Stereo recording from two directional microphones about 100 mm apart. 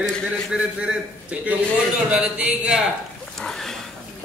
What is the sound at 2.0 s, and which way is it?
Speech, 10° right (ahead or behind).